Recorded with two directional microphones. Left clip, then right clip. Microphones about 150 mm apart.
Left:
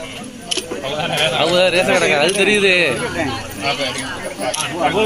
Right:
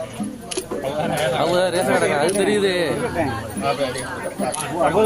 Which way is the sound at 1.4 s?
15° left (ahead or behind).